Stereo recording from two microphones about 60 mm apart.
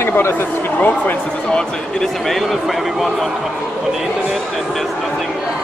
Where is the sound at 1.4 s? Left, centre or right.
Centre.